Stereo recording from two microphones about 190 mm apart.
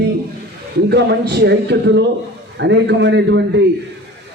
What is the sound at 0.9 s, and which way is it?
A man's voice, 60° right (ahead or behind).